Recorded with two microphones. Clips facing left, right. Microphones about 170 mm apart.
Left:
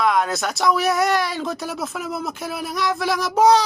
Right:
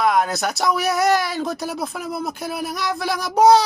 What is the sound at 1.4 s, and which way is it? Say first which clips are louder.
Speech: right 1 dB; 40° right (ahead or behind).